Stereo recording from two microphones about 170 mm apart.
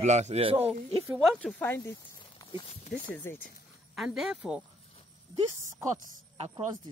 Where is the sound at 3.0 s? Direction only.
10° left (ahead or behind).